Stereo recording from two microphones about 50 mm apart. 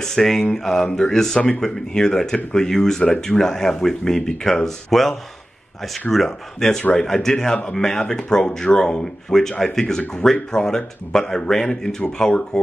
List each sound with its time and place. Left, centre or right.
0.0 s speech: centre
6.1 s speech: centre